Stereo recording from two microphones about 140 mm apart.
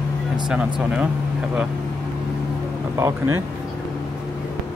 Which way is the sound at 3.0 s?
20° right (ahead or behind).